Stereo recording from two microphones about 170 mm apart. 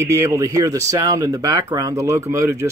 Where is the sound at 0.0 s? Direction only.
15° right (ahead or behind).